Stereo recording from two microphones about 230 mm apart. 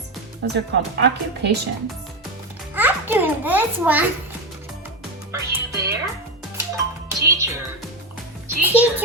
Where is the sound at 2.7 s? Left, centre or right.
Centre.